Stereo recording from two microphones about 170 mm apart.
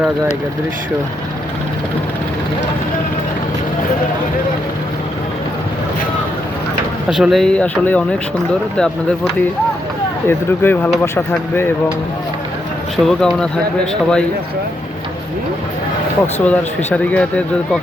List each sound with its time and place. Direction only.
7.1 s speech: centre (ahead or behind)
13.1 s speech: centre (ahead or behind)
16.2 s speech: 10° left (ahead or behind)